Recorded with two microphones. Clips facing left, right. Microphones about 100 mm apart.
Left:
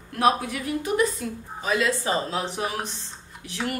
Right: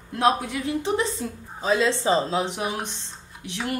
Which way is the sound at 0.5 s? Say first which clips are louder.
Right 1 dB; 25° right (ahead or behind).